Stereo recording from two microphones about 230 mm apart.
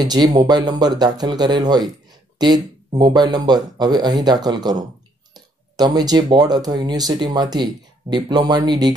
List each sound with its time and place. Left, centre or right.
0.0 s speech: centre